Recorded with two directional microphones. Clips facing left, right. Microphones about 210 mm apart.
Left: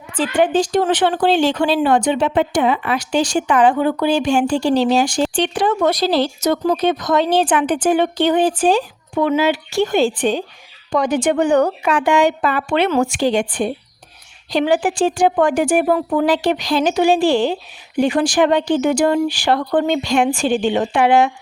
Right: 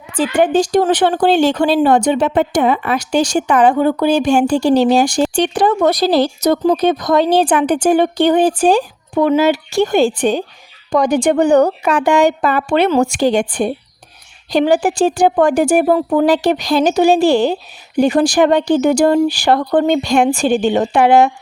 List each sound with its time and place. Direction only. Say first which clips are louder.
0.2 s speech: right 3 dB; 40° right (ahead or behind)